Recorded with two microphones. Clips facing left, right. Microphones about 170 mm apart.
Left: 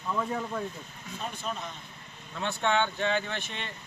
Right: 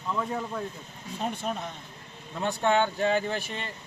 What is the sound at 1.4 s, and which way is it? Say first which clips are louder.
Speech: right 3 dB; 55° right (ahead or behind).